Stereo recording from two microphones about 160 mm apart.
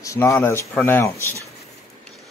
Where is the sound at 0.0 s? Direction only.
20° left (ahead or behind).